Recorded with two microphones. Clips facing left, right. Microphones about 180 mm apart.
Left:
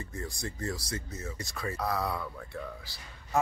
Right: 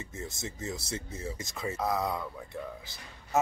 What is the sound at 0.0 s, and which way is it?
Speech, 25° right (ahead or behind).